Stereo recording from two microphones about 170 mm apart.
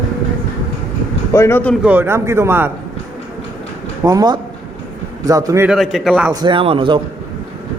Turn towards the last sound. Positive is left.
turn(degrees=-30)  # may be behind; listen again after turning